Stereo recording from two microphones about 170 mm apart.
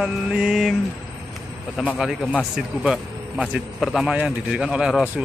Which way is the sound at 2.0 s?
Centre (ahead or behind).